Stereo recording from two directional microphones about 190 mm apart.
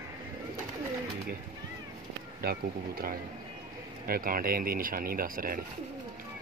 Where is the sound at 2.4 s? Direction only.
55° right (ahead or behind).